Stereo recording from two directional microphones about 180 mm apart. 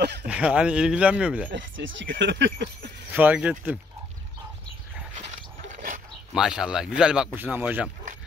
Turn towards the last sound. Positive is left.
turn(degrees=-10)  # may be behind; listen again after turning